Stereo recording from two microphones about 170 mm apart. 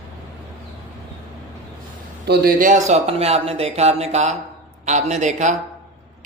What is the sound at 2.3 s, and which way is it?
Speech, 55° right (ahead or behind).